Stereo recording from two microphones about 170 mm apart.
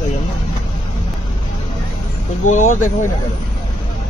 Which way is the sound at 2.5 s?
45° left (ahead or behind).